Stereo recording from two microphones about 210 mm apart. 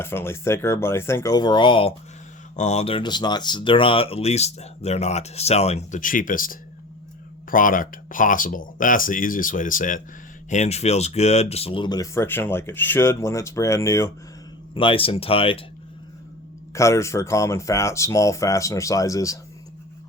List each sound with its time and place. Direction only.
0.0 s speech: 10° left (ahead or behind)
16.7 s speech: 15° left (ahead or behind)